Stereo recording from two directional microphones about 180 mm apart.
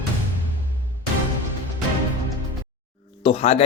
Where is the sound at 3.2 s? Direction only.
35° left (ahead or behind).